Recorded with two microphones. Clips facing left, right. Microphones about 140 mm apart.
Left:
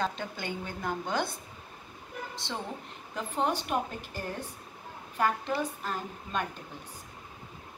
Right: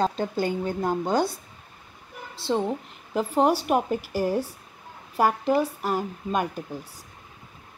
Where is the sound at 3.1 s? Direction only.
35° right (ahead or behind).